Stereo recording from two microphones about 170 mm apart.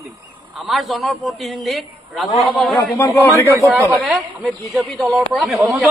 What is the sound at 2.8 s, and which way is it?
Speech, 15° left (ahead or behind).